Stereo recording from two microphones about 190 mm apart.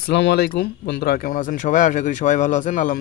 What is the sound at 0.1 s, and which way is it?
Speech, 65° left (ahead or behind).